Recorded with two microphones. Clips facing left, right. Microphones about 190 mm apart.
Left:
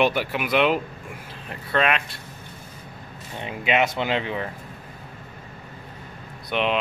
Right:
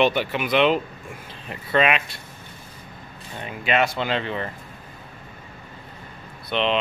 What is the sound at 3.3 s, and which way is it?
Speech, 20° left (ahead or behind).